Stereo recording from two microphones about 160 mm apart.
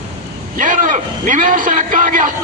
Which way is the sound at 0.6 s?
55° right (ahead or behind).